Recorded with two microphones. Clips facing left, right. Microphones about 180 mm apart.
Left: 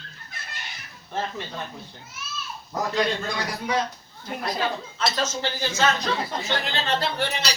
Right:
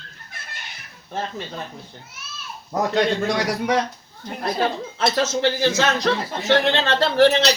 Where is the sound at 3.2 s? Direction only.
80° right.